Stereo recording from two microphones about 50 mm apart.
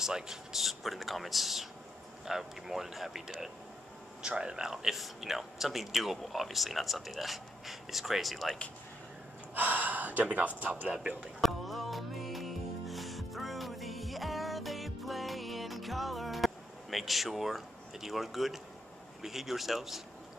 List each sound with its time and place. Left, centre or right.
0.0 s speech: centre
4.2 s speech: centre
9.6 s gasp: right
10.6 s speech: right
11.4 s music: centre
19.2 s speech: centre